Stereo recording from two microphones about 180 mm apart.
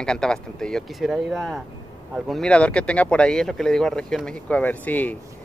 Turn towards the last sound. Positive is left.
turn(degrees=10)  # may be behind; listen again after turning